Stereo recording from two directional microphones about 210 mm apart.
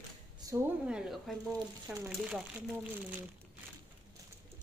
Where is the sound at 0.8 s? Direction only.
5° right (ahead or behind).